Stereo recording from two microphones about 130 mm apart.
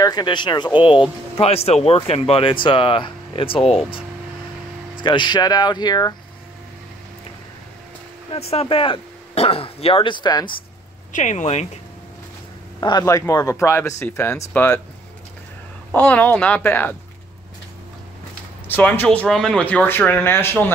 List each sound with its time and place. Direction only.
0.0 s speech: 35° left (ahead or behind)
1.3 s speech: 50° left (ahead or behind); by 6.1 s 30° left (ahead or behind)
8.3 s speech: 50° left (ahead or behind); by 10.4 s 35° left (ahead or behind)
11.1 s speech: 65° left (ahead or behind)
12.8 s speech: 40° left (ahead or behind)
13.3 s speech: 25° left (ahead or behind)
15.9 s speech: 15° left (ahead or behind)
18.7 s speech: 15° left (ahead or behind)